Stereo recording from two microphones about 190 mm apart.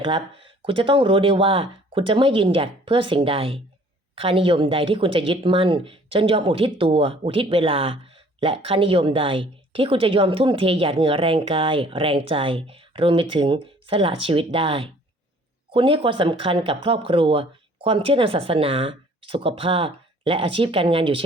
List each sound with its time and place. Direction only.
0.6 s a woman's voice: 30° right (ahead or behind)